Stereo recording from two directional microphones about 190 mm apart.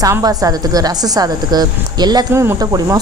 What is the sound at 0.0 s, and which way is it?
A woman's voice, 20° right (ahead or behind).